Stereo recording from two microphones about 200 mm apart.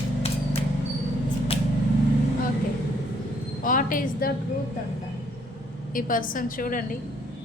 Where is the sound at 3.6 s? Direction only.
45° left (ahead or behind).